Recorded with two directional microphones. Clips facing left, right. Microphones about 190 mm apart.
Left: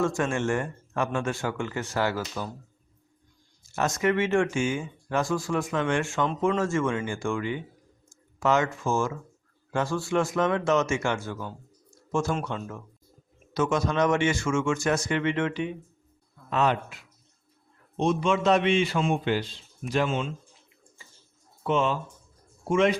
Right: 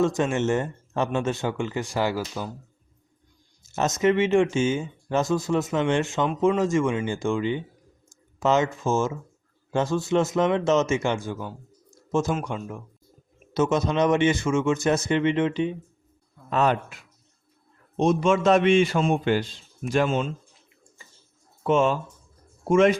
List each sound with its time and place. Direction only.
0.0 s speech: 20° right (ahead or behind)
3.6 s speech: 20° right (ahead or behind)
16.5 s a man's voice: 45° right (ahead or behind)
21.6 s a man's voice: 45° right (ahead or behind)